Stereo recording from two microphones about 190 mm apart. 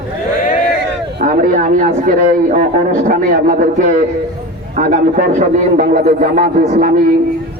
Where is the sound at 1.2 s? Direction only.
45° right (ahead or behind).